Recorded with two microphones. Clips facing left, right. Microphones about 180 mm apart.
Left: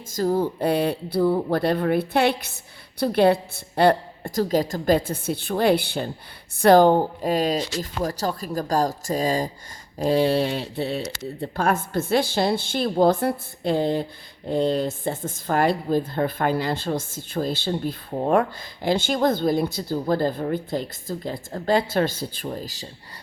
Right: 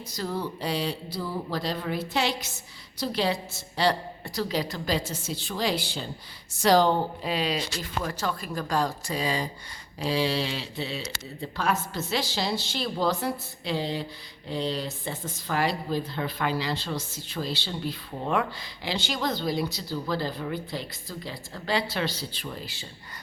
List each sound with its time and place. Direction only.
0.1 s a woman's voice: 45° left (ahead or behind)